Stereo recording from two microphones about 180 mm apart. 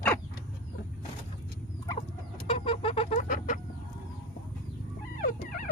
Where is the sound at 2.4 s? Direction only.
30° left (ahead or behind).